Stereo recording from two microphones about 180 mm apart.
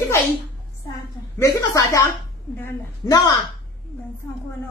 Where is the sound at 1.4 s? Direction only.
15° left (ahead or behind).